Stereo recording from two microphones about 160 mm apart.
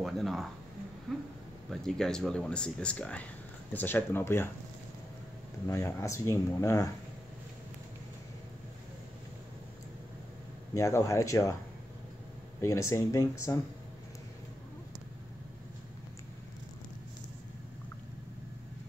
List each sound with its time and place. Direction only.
0.0 s speech: centre (ahead or behind)
5.7 s speech: 15° left (ahead or behind)
10.7 s speech: 15° left (ahead or behind)
12.6 s speech: 20° left (ahead or behind)